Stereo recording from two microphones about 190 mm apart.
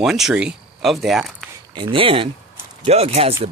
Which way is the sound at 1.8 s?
30° right (ahead or behind).